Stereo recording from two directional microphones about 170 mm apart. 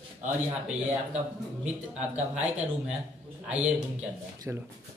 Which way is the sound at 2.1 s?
10° right (ahead or behind).